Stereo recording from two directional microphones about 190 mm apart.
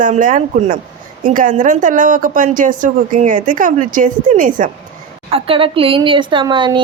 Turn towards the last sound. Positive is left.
turn(degrees=-25)  # may be behind; listen again after turning